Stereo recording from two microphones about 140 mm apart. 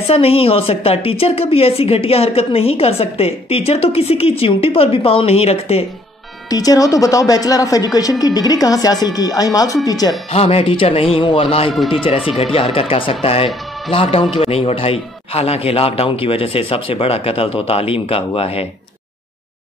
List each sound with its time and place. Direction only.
0.1 s a woman's voice: 45° left (ahead or behind)
6.5 s speech: 25° left (ahead or behind)
10.3 s a man's voice: 45° left (ahead or behind)
11.7 s speech: centre (ahead or behind)
12.5 s a woman's voice: 40° left (ahead or behind)